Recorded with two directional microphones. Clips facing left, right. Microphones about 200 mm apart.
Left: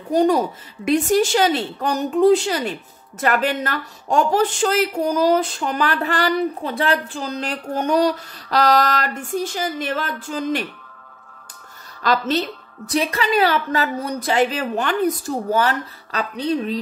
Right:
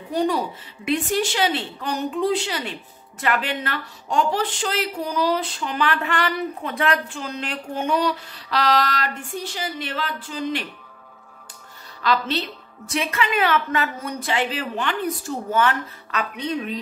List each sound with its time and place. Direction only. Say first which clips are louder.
0.1 s a woman's voice: left 6 dB; 45° left (ahead or behind)
12.0 s a woman's voice: left 3 dB; 45° left (ahead or behind)